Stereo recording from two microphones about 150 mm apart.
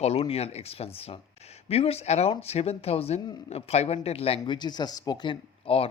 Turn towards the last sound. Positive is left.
turn(degrees=40)  # may be behind; listen again after turning